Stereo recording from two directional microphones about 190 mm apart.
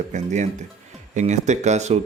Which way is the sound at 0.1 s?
40° right (ahead or behind).